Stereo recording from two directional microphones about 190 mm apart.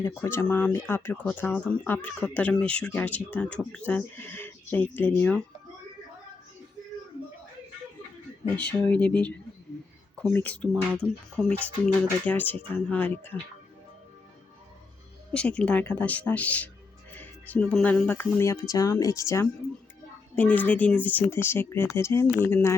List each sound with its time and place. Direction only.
0.0 s speech: 10° left (ahead or behind)
8.5 s speech: 5° left (ahead or behind)
15.3 s speech: 5° left (ahead or behind)